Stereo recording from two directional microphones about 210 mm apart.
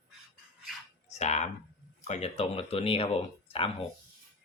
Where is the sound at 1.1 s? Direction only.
30° left (ahead or behind).